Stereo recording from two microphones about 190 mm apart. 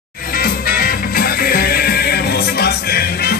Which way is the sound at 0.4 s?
50° left (ahead or behind).